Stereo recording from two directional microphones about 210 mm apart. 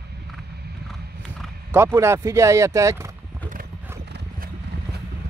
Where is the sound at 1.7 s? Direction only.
10° right (ahead or behind).